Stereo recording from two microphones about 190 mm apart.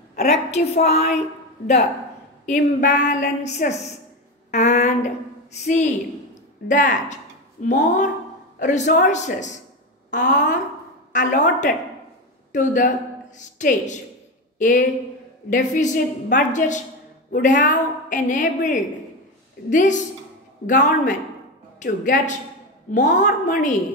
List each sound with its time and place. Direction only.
0.2 s a woman's voice: 35° left (ahead or behind)
2.4 s a woman's voice: 40° left (ahead or behind)
12.5 s a woman's voice: 40° left (ahead or behind)